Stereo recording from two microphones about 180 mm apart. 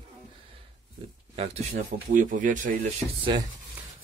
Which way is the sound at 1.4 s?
40° right (ahead or behind).